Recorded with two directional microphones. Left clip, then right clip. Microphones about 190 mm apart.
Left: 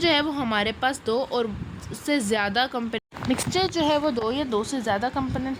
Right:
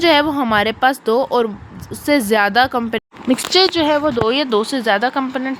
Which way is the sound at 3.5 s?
20° right (ahead or behind).